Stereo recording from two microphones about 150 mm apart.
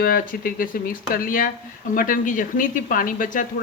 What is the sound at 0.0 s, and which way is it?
Speech, 80° left.